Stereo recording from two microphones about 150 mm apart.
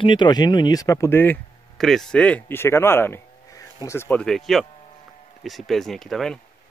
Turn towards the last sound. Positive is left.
turn(degrees=0)  # may be behind; listen again after turning